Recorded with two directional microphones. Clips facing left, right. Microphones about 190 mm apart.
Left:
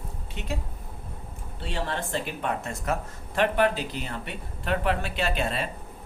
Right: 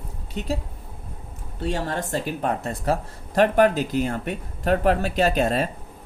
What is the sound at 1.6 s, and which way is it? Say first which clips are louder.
Speech: right 5 dB; 45° right (ahead or behind).